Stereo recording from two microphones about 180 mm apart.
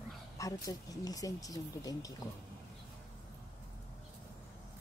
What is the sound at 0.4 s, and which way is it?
Speech, 20° left (ahead or behind).